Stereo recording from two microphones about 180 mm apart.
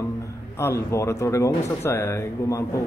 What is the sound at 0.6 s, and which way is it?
A man's voice, 15° left (ahead or behind).